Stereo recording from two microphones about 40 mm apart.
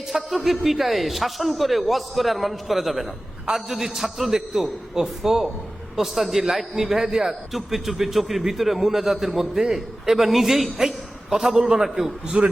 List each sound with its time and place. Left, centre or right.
0.1 s a man's voice: centre
12.4 s a man's voice: right